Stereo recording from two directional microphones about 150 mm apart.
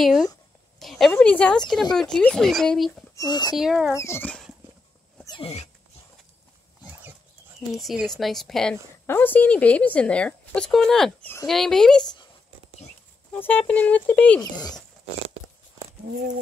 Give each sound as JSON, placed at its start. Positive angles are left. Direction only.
{"t": 0.0, "sound": "speech", "side_deg": 0}
{"t": 0.7, "sound": "a sound", "side_deg": 0}
{"t": 1.1, "sound": "speech", "side_deg": 10}
{"t": 3.2, "sound": "speech", "side_deg": 25}
{"t": 3.5, "sound": "speech", "side_deg": 0}
{"t": 3.9, "sound": "speech", "side_deg": 20}
{"t": 5.4, "sound": "dog", "side_deg": 45}
{"t": 7.7, "sound": "speech", "side_deg": 0}
{"t": 9.0, "sound": "speech", "side_deg": 15}
{"t": 13.3, "sound": "speech", "side_deg": 10}
{"t": 14.4, "sound": "speech", "side_deg": 25}